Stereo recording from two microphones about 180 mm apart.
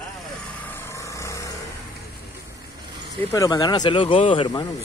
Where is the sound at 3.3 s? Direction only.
20° left (ahead or behind).